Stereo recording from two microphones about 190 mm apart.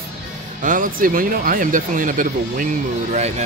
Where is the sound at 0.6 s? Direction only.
45° right (ahead or behind).